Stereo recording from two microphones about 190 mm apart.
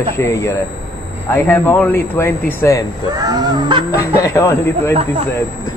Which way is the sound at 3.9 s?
15° left (ahead or behind).